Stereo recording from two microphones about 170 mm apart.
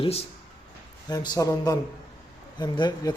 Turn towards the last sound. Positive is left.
turn(degrees=25)  # may be behind; listen again after turning